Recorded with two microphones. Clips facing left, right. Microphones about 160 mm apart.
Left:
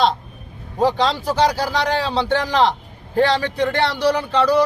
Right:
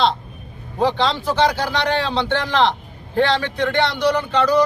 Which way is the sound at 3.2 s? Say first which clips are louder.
Left 1 dB; 40° left (ahead or behind).